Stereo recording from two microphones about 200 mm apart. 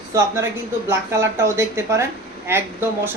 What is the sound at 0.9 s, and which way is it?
Speech, 15° right (ahead or behind).